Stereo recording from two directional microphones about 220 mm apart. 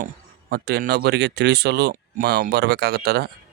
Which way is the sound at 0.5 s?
45° right (ahead or behind).